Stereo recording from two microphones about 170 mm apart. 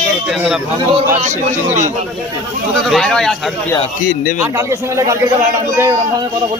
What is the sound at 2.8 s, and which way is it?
Speech, centre (ahead or behind).